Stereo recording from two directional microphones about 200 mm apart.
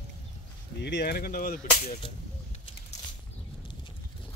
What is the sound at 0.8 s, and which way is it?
Whip, 55° left (ahead or behind).